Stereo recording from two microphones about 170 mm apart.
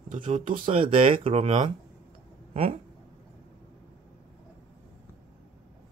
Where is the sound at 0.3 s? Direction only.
50° right (ahead or behind).